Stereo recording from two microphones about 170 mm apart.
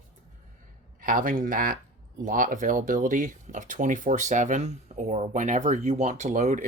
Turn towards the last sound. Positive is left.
turn(degrees=-45)  # may be behind; listen again after turning